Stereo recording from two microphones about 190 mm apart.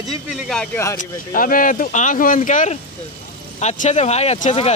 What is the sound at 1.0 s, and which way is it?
Speech, 45° left (ahead or behind).